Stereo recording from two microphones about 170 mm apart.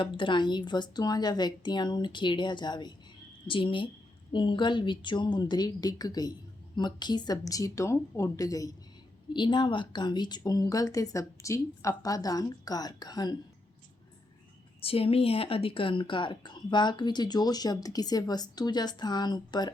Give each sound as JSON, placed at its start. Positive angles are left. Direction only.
{"t": 0.2, "sound": "speech", "side_deg": 30}
{"t": 14.8, "sound": "speech", "side_deg": 35}